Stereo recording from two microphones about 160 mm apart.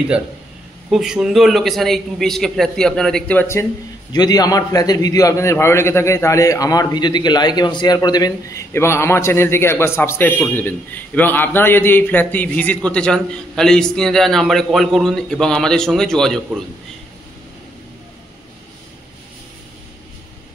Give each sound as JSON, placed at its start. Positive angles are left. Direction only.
{"t": 0.8, "sound": "a man's voice", "side_deg": -5}
{"t": 4.1, "sound": "a man's voice", "side_deg": 25}